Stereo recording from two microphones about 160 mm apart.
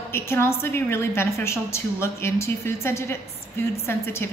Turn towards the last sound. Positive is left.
turn(degrees=15)  # may be behind; listen again after turning